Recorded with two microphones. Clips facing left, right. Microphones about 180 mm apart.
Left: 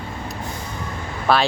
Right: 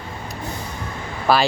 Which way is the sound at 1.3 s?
5° right (ahead or behind).